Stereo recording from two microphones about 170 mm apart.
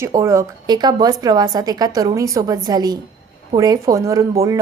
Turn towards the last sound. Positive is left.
turn(degrees=-20)  # may be behind; listen again after turning